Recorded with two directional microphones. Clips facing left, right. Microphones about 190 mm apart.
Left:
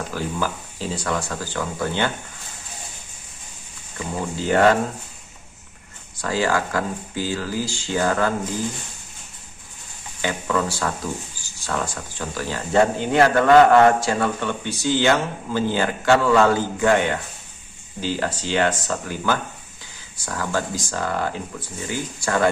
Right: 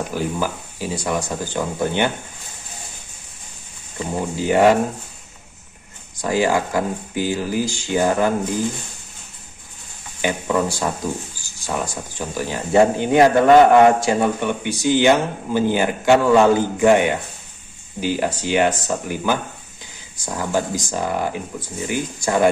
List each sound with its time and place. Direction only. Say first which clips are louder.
0.1 s speech: right 3 dB; 15° right (ahead or behind)
4.4 s speech: right 2 dB; 15° right (ahead or behind)
6.2 s speech: right 3 dB; 15° right (ahead or behind)
10.2 s speech: right 3 dB; 20° right (ahead or behind)